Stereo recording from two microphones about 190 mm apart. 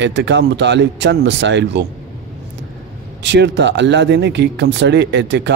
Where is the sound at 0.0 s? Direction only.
70° right (ahead or behind).